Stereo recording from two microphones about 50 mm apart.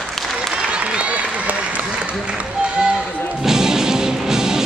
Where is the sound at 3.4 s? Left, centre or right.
Centre.